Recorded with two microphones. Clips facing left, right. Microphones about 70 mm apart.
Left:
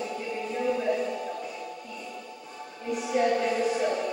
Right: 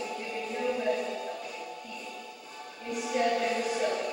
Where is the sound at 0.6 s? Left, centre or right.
Centre.